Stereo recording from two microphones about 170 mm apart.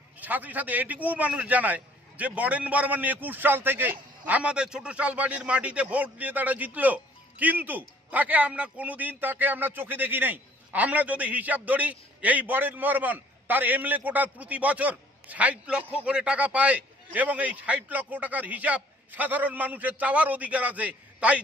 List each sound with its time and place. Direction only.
0.2 s a man's voice: 10° right (ahead or behind)